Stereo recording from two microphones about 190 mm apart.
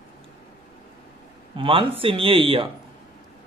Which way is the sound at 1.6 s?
25° right (ahead or behind).